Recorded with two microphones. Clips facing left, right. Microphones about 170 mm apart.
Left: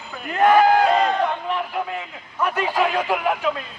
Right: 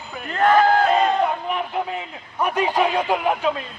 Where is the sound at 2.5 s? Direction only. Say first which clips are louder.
Right 2 dB; 20° right (ahead or behind).